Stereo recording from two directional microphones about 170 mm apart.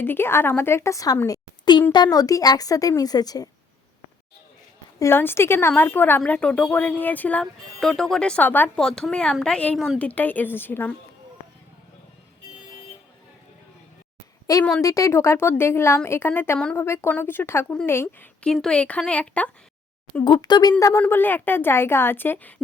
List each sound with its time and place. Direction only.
0.0 s a woman's voice: 10° left (ahead or behind)
4.9 s a woman's voice: 15° left (ahead or behind)
14.8 s a woman's voice: 20° left (ahead or behind)
20.2 s a woman's voice: 25° left (ahead or behind)